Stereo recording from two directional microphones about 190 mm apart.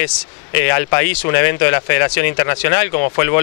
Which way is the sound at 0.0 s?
15° left (ahead or behind).